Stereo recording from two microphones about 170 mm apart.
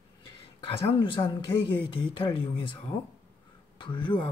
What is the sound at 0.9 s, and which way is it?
Speech, 30° left (ahead or behind).